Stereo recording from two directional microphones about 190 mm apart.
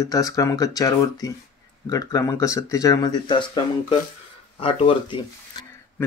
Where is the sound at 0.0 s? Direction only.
20° left (ahead or behind).